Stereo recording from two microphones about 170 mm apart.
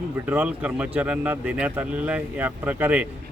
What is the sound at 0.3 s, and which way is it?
Speech, 10° right (ahead or behind).